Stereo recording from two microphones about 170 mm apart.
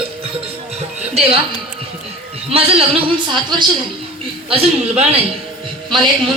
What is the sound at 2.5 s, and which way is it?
Speech, 35° right (ahead or behind).